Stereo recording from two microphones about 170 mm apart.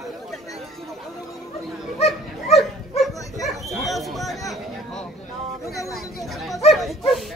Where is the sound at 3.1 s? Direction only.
20° left (ahead or behind).